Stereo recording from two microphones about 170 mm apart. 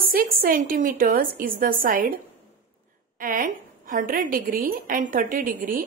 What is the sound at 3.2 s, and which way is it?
A woman's voice, 55° right (ahead or behind).